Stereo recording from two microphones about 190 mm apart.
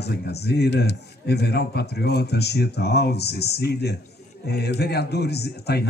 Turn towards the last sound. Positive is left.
turn(degrees=60)  # may be behind; listen again after turning